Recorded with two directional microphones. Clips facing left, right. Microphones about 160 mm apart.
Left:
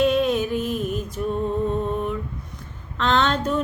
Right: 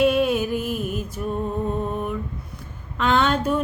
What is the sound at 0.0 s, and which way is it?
Music, 10° right (ahead or behind).